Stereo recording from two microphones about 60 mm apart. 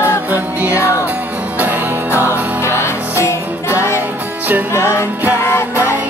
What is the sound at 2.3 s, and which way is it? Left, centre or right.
Music, left.